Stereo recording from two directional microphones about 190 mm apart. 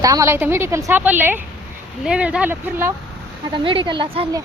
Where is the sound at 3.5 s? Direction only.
25° right (ahead or behind).